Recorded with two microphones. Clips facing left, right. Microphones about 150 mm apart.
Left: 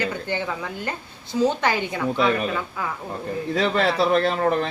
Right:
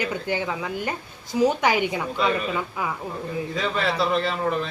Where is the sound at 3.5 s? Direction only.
70° left (ahead or behind).